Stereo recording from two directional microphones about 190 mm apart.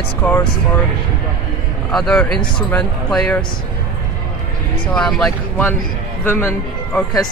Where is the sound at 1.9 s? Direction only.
Centre (ahead or behind).